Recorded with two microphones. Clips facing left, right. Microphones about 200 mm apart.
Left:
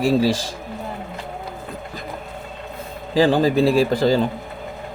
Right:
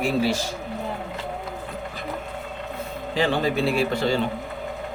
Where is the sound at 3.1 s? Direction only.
35° left (ahead or behind).